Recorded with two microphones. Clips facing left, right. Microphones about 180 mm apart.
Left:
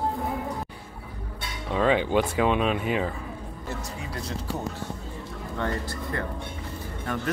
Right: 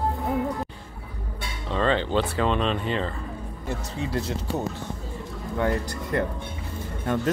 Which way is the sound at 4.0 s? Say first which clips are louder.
Right 6 dB; 25° right (ahead or behind).